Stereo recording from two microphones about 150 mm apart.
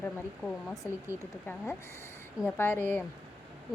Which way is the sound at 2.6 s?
15° left (ahead or behind).